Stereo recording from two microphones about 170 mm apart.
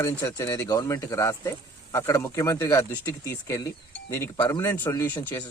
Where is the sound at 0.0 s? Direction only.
15° left (ahead or behind).